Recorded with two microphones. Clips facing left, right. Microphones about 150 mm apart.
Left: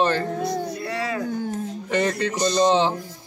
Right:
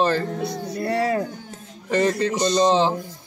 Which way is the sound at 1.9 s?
Centre (ahead or behind).